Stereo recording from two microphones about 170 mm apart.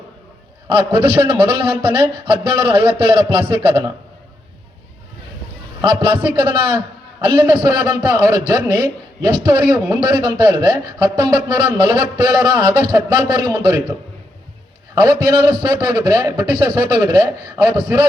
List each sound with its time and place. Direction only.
0.8 s a man's voice: 30° right (ahead or behind)
5.8 s speech: 30° right (ahead or behind)
15.0 s speech: 25° right (ahead or behind)